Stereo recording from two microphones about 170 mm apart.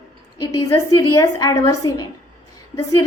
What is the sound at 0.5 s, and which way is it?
A woman's voice, 20° left (ahead or behind).